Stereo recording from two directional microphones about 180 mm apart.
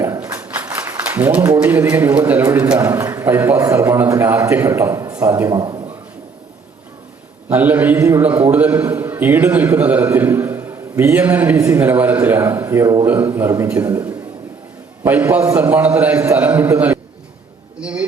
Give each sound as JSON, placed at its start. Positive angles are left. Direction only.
{"t": 0.0, "sound": "a man's voice", "side_deg": -15}
{"t": 7.5, "sound": "a man's voice", "side_deg": -10}